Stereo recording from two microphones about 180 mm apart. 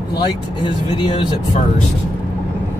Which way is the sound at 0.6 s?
25° left (ahead or behind).